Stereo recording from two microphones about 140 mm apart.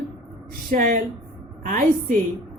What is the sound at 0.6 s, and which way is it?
Mantra, 75° right (ahead or behind).